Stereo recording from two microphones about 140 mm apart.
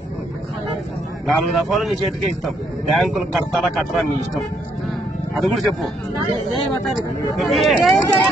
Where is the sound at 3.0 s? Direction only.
Centre (ahead or behind).